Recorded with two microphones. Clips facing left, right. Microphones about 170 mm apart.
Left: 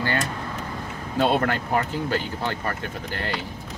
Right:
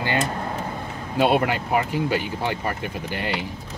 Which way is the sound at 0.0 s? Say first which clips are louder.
Right 2 dB; 20° right (ahead or behind).